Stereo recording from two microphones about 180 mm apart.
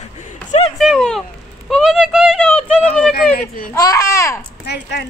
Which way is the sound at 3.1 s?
55° left (ahead or behind).